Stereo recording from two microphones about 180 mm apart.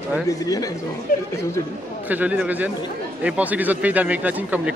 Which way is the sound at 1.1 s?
50° left (ahead or behind).